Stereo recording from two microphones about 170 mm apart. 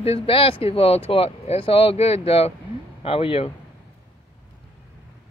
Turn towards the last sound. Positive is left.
turn(degrees=35)  # may be behind; listen again after turning